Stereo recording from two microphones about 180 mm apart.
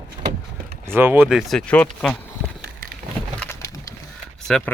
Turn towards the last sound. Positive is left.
turn(degrees=5)  # may be behind; listen again after turning